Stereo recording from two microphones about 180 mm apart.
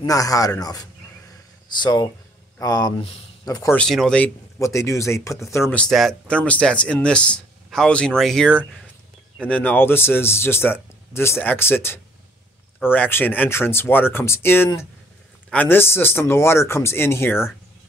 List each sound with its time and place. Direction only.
0.0 s speech: 20° left (ahead or behind)
3.7 s speech: 5° left (ahead or behind)
4.6 s speech: 15° left (ahead or behind)